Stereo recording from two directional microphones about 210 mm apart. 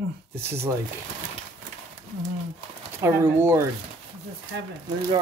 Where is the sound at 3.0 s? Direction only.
10° right (ahead or behind).